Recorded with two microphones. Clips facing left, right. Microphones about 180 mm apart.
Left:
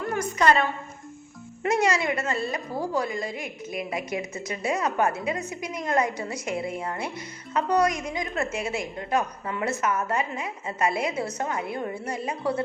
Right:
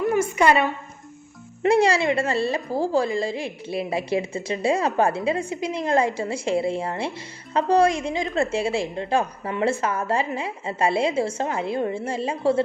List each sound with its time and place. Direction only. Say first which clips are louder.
0.0 s a woman's voice: right 4 dB; 5° right (ahead or behind)
1.6 s a woman's voice: right 5 dB; 30° right (ahead or behind)